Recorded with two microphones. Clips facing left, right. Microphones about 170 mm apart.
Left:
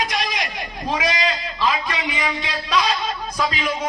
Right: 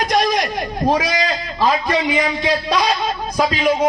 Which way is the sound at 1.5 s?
40° right (ahead or behind).